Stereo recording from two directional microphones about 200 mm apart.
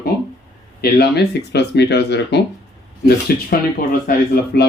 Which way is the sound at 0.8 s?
55° left (ahead or behind).